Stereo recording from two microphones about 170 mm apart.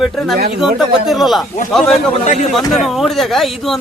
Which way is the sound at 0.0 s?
Centre (ahead or behind).